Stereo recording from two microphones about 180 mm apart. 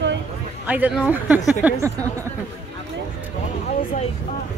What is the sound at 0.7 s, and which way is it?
A woman's voice, 10° right (ahead or behind).